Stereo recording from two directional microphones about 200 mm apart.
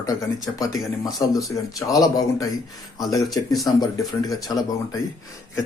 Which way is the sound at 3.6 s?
15° left (ahead or behind).